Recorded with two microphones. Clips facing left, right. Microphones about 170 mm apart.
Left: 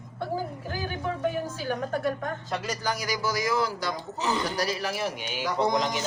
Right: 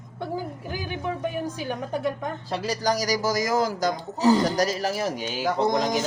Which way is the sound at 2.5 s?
35° right (ahead or behind).